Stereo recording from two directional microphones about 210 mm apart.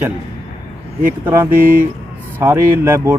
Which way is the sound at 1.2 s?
10° right (ahead or behind).